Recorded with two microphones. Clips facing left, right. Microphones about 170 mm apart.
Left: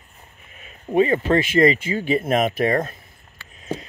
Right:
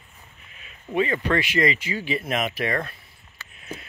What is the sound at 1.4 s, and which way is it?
Speech, 50° left (ahead or behind).